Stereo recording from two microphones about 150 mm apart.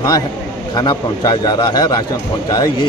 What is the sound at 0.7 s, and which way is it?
A man's voice, 30° left (ahead or behind).